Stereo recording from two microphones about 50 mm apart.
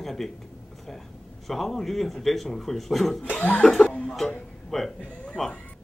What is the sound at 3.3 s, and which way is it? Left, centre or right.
Speech, left.